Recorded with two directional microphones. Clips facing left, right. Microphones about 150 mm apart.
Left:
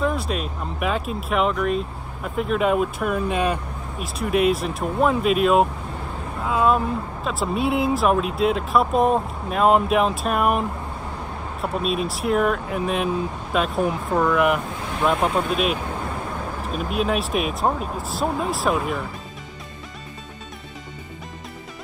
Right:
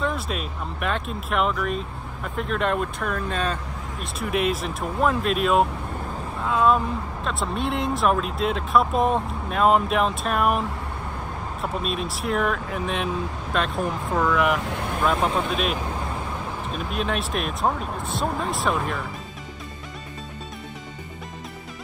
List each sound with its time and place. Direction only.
0.0 s speech: centre (ahead or behind)
4.0 s speech: centre (ahead or behind)
14.7 s vehicle: 60° right (ahead or behind)
15.0 s speech: centre (ahead or behind)